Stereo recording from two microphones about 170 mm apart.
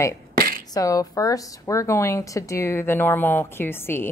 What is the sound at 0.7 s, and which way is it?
A woman's voice, 20° left (ahead or behind).